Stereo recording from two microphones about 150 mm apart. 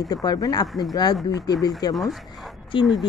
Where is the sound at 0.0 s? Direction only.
25° left (ahead or behind).